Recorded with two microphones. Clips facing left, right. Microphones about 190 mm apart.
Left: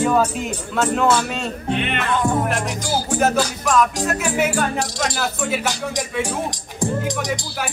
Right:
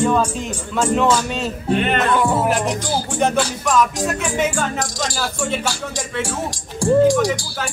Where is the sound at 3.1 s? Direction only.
Centre (ahead or behind).